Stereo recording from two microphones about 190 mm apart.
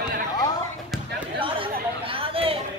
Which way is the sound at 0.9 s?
Centre (ahead or behind).